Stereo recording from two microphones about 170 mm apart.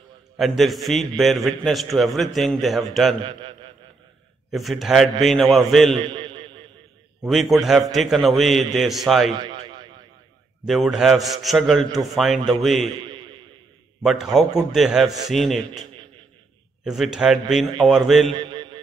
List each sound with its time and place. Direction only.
0.4 s a man's voice: centre (ahead or behind)
3.3 s a man's voice: 30° right (ahead or behind)
4.5 s a man's voice: centre (ahead or behind)
6.0 s a sound: 30° right (ahead or behind)
7.2 s a man's voice: centre (ahead or behind)
9.4 s a sound: 30° right (ahead or behind)
10.7 s a man's voice: centre (ahead or behind)
13.0 s a sound: 30° right (ahead or behind)
14.0 s a man's voice: centre (ahead or behind)
16.8 s a man's voice: 5° right (ahead or behind)
18.4 s mantra: 30° right (ahead or behind)